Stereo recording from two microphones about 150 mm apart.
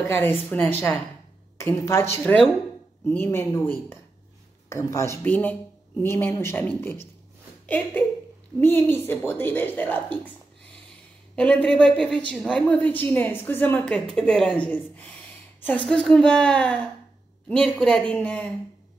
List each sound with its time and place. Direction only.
0.1 s speech: 15° left (ahead or behind)
11.3 s speech: 10° left (ahead or behind)